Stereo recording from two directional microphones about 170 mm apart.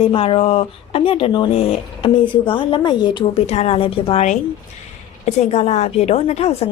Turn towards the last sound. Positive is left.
turn(degrees=40)  # may be behind; listen again after turning